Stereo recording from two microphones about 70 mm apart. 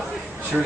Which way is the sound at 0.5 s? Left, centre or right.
Right.